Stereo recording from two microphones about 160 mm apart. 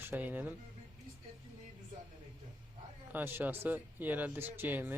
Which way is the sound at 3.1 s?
15° right (ahead or behind).